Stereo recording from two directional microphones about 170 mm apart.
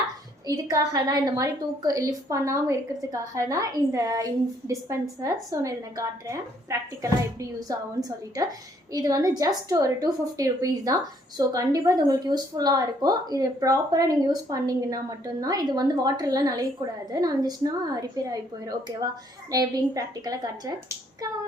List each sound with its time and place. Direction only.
0.4 s a woman's voice: 20° right (ahead or behind)
8.9 s a woman's voice: 20° right (ahead or behind)
19.5 s a woman's voice: 20° right (ahead or behind)